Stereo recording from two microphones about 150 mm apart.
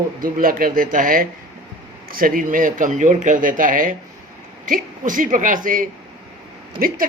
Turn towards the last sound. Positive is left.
turn(degrees=-75)  # may be behind; listen again after turning